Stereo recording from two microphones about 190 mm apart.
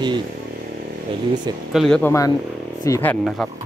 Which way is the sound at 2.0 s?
15° left (ahead or behind).